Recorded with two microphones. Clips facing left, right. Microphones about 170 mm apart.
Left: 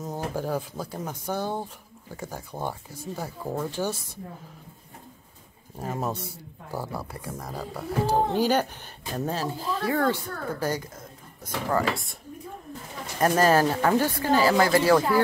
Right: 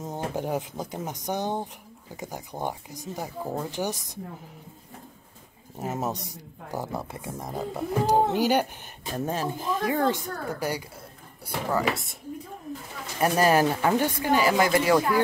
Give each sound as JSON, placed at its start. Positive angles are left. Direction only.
{"t": 0.3, "sound": "speech", "side_deg": -20}
{"t": 5.8, "sound": "speech", "side_deg": -20}
{"t": 13.2, "sound": "speech", "side_deg": -15}